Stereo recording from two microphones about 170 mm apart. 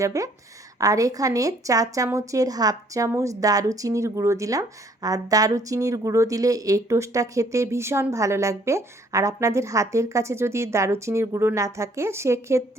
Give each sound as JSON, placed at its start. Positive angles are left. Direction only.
{"t": 0.0, "sound": "a woman's voice", "side_deg": -20}